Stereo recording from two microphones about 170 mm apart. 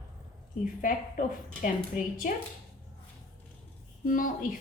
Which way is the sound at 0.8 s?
50° left (ahead or behind).